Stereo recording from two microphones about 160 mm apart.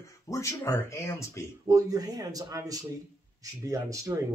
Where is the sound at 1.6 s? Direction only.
20° right (ahead or behind).